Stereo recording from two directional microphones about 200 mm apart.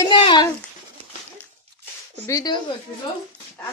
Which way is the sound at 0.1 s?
25° left (ahead or behind).